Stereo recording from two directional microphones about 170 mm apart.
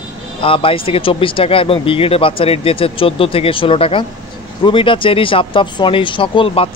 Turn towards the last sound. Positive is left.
turn(degrees=30)  # may be behind; listen again after turning